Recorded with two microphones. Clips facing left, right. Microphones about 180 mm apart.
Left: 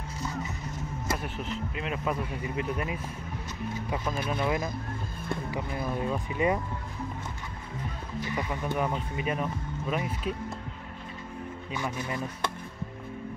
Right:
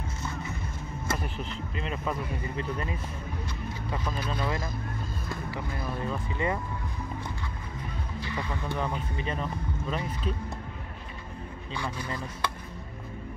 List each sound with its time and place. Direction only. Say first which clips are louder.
0.2 s music: left 4 dB; 40° left (ahead or behind)
1.0 s speech: even; 5° left (ahead or behind)
8.2 s speech: left 3 dB; 15° left (ahead or behind)
11.7 s speech: left 1 dB; 20° left (ahead or behind)